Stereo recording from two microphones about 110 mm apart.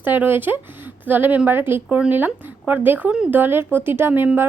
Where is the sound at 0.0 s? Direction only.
15° right (ahead or behind).